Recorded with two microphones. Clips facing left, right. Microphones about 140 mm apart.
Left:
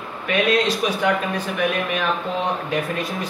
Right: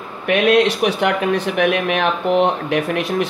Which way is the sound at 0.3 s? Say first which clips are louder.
Right 5 dB; 65° right (ahead or behind).